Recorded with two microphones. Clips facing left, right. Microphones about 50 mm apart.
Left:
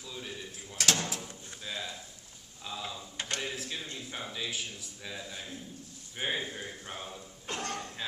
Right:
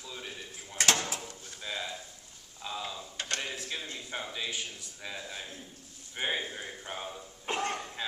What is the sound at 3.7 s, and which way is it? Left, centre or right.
A man's voice, centre.